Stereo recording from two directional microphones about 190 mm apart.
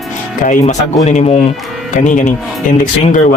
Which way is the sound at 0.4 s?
40° left (ahead or behind).